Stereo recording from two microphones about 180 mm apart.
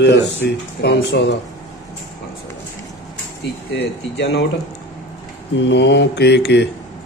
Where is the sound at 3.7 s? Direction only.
70° left (ahead or behind).